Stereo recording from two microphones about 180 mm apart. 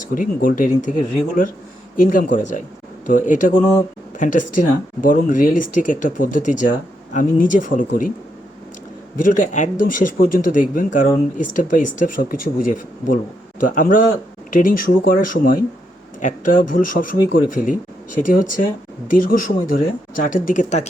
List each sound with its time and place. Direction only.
0.1 s speech: 50° left (ahead or behind)
2.0 s speech: 50° left (ahead or behind)
9.2 s speech: 45° left (ahead or behind)